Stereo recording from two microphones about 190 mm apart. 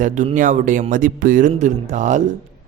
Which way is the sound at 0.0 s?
40° right (ahead or behind).